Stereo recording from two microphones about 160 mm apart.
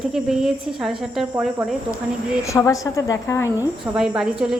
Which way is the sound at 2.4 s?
20° left (ahead or behind).